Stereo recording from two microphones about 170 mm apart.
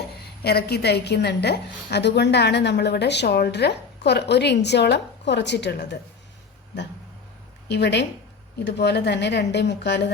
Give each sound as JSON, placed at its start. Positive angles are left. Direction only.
{"t": 0.4, "sound": "a woman's voice", "side_deg": 70}
{"t": 7.7, "sound": "a woman's voice", "side_deg": 90}